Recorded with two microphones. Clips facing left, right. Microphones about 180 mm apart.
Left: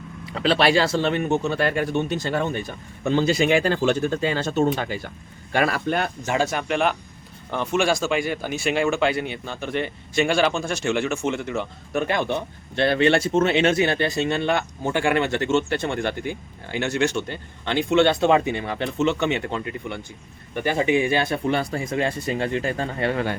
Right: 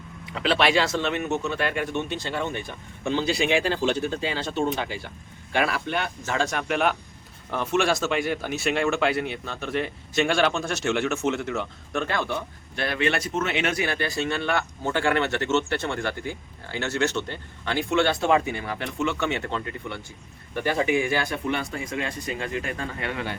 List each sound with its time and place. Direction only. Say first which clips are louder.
0.3 s speech: left 3 dB; 35° left (ahead or behind)
6.2 s speech: left 1 dB; 10° left (ahead or behind)
12.0 s speech: left 4 dB; 15° left (ahead or behind)
12.3 s speech: left 4 dB; 30° left (ahead or behind)
21.3 s speech: left 5 dB; 35° left (ahead or behind)